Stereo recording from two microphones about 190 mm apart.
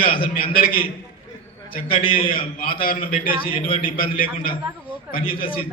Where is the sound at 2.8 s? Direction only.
50° left (ahead or behind).